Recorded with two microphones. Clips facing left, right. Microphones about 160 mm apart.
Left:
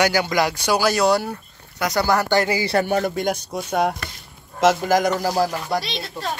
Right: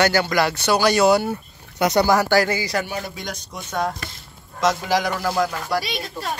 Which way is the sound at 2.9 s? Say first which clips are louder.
Left 9 dB; 55° left (ahead or behind).